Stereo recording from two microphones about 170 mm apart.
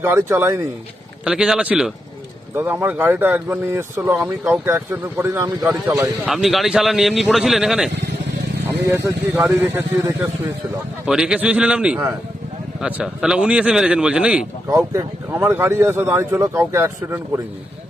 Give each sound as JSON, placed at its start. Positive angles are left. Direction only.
{"t": 0.0, "sound": "speech", "side_deg": -15}
{"t": 6.2, "sound": "speech", "side_deg": 0}
{"t": 8.6, "sound": "speech", "side_deg": -15}
{"t": 11.0, "sound": "speech", "side_deg": -5}
{"t": 14.7, "sound": "speech", "side_deg": -15}